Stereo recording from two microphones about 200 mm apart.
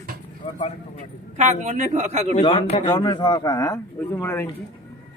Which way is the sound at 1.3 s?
35° right (ahead or behind).